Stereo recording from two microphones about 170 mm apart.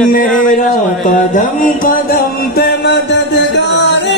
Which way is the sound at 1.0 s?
50° left (ahead or behind).